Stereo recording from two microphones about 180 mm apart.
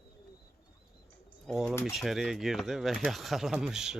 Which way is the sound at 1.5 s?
Centre (ahead or behind).